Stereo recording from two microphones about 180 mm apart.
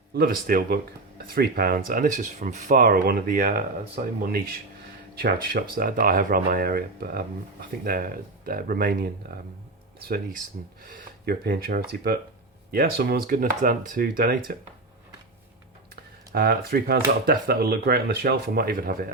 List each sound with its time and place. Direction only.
0.1 s speech: 55° right (ahead or behind)
16.3 s speech: 60° right (ahead or behind)